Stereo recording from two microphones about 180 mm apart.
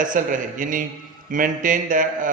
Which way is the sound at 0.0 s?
45° right (ahead or behind).